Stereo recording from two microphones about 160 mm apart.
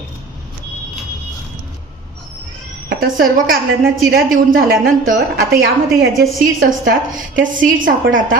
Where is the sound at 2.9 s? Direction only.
65° right (ahead or behind).